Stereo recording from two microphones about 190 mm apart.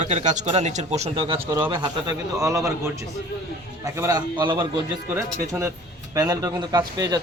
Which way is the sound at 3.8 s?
20° right (ahead or behind).